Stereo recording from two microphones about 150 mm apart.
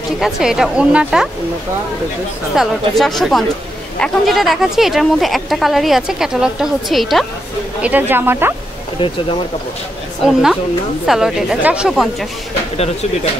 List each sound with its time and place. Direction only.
0.2 s speech: 5° right (ahead or behind)
2.6 s speech: centre (ahead or behind)
7.8 s speech: 10° right (ahead or behind)
10.2 s speech: 5° right (ahead or behind)
12.7 s speech: 45° left (ahead or behind)